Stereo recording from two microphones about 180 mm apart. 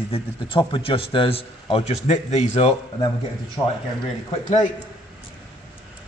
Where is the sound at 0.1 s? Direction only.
30° left (ahead or behind).